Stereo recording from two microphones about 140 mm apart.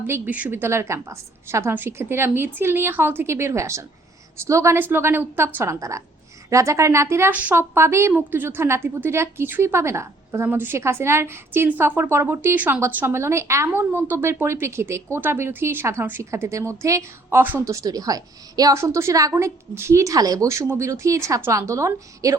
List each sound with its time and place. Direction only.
0.1 s a woman's voice: 10° right (ahead or behind)